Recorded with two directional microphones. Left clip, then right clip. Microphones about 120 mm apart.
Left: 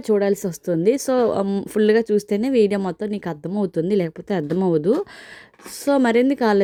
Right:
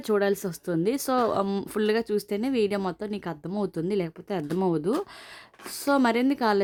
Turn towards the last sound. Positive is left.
turn(degrees=30)  # may be behind; listen again after turning